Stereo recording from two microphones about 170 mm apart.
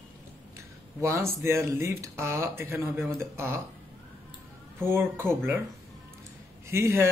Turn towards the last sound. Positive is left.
turn(degrees=-15)  # may be behind; listen again after turning